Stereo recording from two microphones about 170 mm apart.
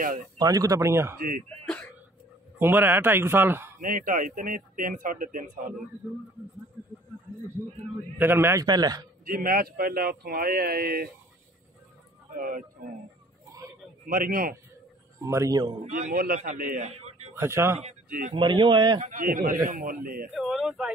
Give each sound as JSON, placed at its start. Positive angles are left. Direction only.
{"t": 0.4, "sound": "a man's voice", "side_deg": -20}
{"t": 2.6, "sound": "speech", "side_deg": -10}
{"t": 3.8, "sound": "speech", "side_deg": -50}
{"t": 8.2, "sound": "a man's voice", "side_deg": -15}
{"t": 9.2, "sound": "speech", "side_deg": -55}
{"t": 12.4, "sound": "speech", "side_deg": -55}
{"t": 14.0, "sound": "speech", "side_deg": -55}
{"t": 15.1, "sound": "a man's voice", "side_deg": -20}
{"t": 15.8, "sound": "speech", "side_deg": -50}
{"t": 16.9, "sound": "a sound", "side_deg": -40}
{"t": 17.4, "sound": "speech", "side_deg": -15}
{"t": 18.3, "sound": "a man's voice", "side_deg": -30}
{"t": 18.9, "sound": "speech", "side_deg": -50}
{"t": 20.3, "sound": "speech", "side_deg": 0}